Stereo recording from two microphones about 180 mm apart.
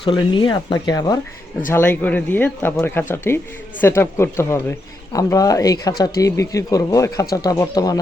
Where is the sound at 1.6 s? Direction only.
10° left (ahead or behind).